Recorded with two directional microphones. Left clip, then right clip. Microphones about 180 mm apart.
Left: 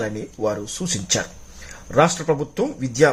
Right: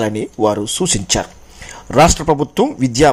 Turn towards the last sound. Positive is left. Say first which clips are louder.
# right 5 dB
turn(degrees=-25)  # may be behind; listen again after turning